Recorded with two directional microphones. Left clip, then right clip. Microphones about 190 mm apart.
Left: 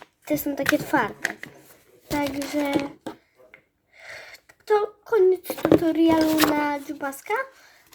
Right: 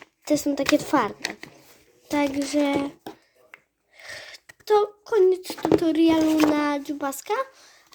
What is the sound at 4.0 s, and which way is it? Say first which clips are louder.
Sneeze: right 1 dB; 40° right (ahead or behind).